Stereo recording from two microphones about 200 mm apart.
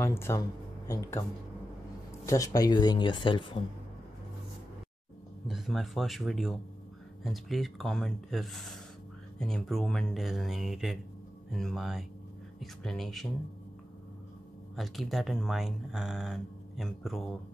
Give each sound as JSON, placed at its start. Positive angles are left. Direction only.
{"t": 0.0, "sound": "speech", "side_deg": 15}
{"t": 2.2, "sound": "speech", "side_deg": 15}
{"t": 5.5, "sound": "speech", "side_deg": 0}
{"t": 14.8, "sound": "speech", "side_deg": 0}